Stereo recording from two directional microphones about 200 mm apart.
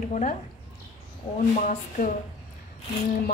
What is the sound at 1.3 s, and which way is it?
Speech, 25° left (ahead or behind).